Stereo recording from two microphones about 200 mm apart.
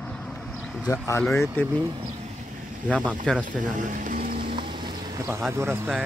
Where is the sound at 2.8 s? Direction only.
5° left (ahead or behind).